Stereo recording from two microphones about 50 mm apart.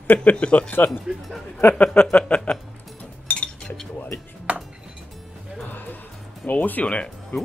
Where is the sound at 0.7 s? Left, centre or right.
Left.